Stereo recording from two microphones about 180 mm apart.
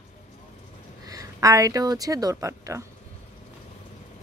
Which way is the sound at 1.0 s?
20° right (ahead or behind).